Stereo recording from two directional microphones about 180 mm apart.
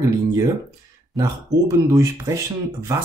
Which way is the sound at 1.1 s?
20° right (ahead or behind).